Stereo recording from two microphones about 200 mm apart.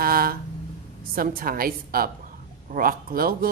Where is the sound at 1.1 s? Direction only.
45° right (ahead or behind).